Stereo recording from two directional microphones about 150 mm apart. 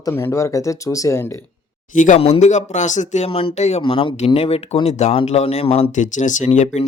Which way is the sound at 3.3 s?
40° left (ahead or behind).